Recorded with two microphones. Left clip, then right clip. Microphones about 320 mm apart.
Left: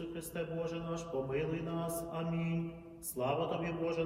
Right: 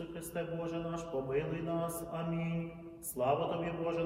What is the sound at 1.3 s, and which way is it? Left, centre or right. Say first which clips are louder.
A man's voice: right 1 dB; centre.